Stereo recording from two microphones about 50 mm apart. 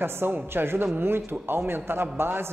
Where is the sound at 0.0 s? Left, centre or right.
Right.